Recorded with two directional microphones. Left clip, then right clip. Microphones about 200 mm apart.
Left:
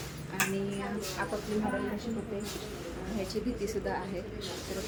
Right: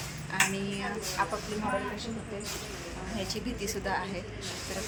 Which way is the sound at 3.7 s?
Centre (ahead or behind).